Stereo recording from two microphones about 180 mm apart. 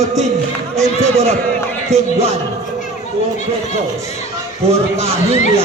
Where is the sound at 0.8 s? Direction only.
35° right (ahead or behind).